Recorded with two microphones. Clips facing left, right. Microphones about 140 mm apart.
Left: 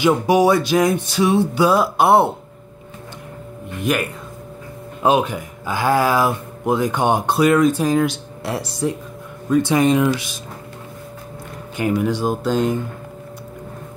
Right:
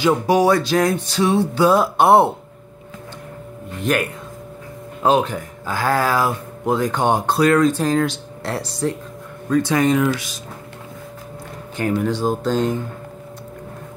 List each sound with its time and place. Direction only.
0.0 s speech: 15° left (ahead or behind)
3.8 s speech: 5° left (ahead or behind); by 10.3 s 20° left (ahead or behind)
11.7 s speech: 15° left (ahead or behind)